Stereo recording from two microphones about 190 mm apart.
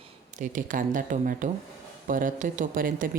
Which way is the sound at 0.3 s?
45° right (ahead or behind).